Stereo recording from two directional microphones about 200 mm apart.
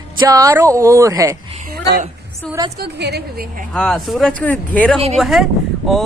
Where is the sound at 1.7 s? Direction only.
50° right (ahead or behind).